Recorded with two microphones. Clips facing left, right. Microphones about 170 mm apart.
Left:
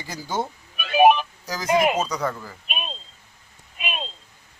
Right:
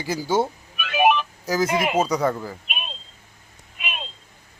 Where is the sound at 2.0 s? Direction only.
10° right (ahead or behind).